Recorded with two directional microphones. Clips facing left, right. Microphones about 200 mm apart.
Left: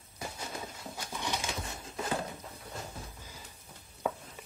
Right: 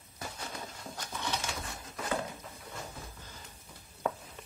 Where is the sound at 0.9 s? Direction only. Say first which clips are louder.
Even; 15° left (ahead or behind).